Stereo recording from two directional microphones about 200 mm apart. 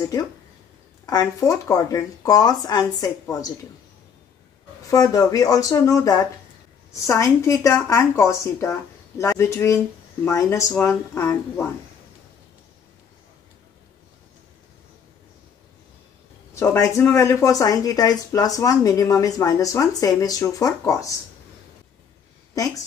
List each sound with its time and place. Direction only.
1.0 s speech: 15° left (ahead or behind)
4.8 s speech: 15° left (ahead or behind)
16.5 s speech: 15° left (ahead or behind)